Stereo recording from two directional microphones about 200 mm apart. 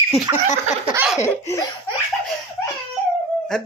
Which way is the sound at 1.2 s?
15° left (ahead or behind).